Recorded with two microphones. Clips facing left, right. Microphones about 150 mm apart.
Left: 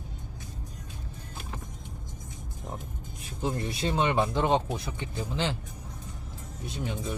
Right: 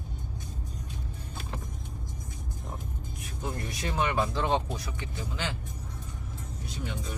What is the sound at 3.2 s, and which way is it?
Speech, 25° left (ahead or behind).